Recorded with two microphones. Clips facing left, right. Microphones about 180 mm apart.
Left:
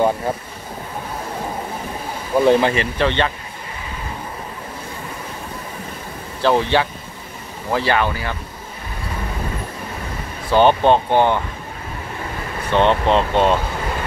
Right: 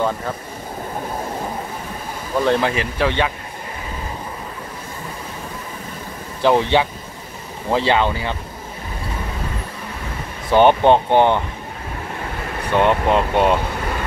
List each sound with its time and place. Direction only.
2.3 s speech: 5° left (ahead or behind)
6.4 s speech: 15° right (ahead or behind)
10.5 s speech: 15° right (ahead or behind)
12.7 s speech: 10° right (ahead or behind)